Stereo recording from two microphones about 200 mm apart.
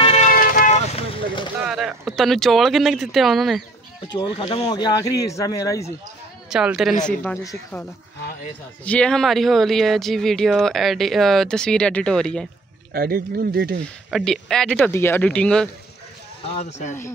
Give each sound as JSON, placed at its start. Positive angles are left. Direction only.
{"t": 0.0, "sound": "vehicle", "side_deg": 35}
{"t": 1.6, "sound": "speech", "side_deg": -5}
{"t": 4.1, "sound": "speech", "side_deg": 25}
{"t": 6.5, "sound": "speech", "side_deg": -5}
{"t": 7.4, "sound": "speech", "side_deg": 10}
{"t": 12.9, "sound": "speech", "side_deg": -50}
{"t": 14.1, "sound": "speech", "side_deg": 0}
{"t": 16.4, "sound": "speech", "side_deg": 30}